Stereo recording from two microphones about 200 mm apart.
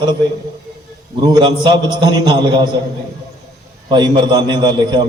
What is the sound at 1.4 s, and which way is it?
A man's voice, 20° right (ahead or behind).